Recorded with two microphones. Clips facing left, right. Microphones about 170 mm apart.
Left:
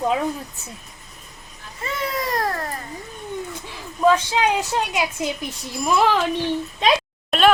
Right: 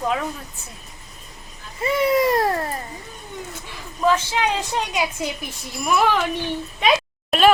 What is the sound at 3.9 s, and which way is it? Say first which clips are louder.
A woman's voice: left 2 dB; 15° left (ahead or behind).